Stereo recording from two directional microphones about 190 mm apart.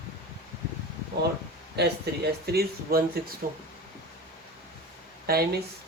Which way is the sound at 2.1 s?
60° right (ahead or behind).